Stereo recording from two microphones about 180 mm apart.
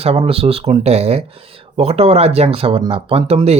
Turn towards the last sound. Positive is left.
turn(degrees=-35)  # may be behind; listen again after turning